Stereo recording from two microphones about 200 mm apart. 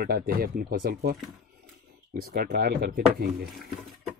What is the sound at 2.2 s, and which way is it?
Speech, 50° right (ahead or behind).